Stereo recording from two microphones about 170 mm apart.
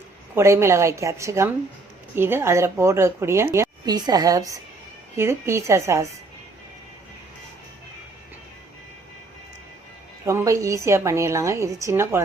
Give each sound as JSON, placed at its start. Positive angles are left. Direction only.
{"t": 0.3, "sound": "speech", "side_deg": -15}
{"t": 10.2, "sound": "speech", "side_deg": -15}